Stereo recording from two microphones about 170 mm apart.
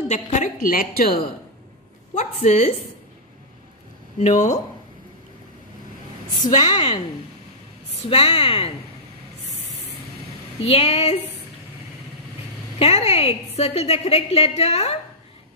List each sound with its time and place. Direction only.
0.1 s a woman's voice: 45° left (ahead or behind); by 1.2 s 60° left (ahead or behind)
2.1 s a woman's voice: 40° left (ahead or behind)
4.2 s a woman's voice: 45° left (ahead or behind)
6.6 s a woman's voice: 30° left (ahead or behind)
10.6 s a woman's voice: 35° left (ahead or behind)
12.7 s a woman's voice: 40° left (ahead or behind)